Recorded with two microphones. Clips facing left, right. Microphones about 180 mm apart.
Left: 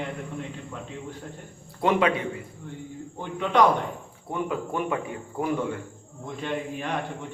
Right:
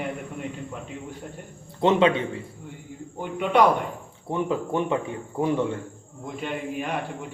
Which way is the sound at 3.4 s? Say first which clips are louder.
Right 1 dB; 10° right (ahead or behind).